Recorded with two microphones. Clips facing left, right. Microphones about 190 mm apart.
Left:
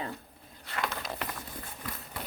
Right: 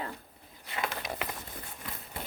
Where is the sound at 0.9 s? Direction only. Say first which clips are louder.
Even; 10° right (ahead or behind).